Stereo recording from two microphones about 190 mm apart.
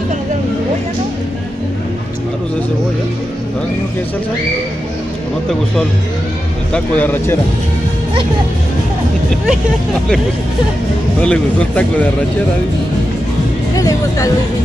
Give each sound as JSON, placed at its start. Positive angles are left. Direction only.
{"t": 6.7, "sound": "speech", "side_deg": 10}
{"t": 11.1, "sound": "speech", "side_deg": 5}
{"t": 13.7, "sound": "speech", "side_deg": 15}